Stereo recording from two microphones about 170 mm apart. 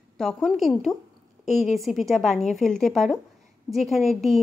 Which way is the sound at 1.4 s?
45° left (ahead or behind).